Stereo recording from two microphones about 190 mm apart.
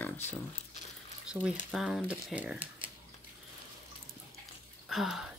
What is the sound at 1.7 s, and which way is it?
Speech, 5° right (ahead or behind).